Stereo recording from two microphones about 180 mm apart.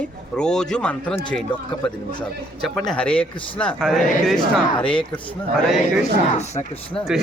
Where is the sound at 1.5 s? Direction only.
25° left (ahead or behind).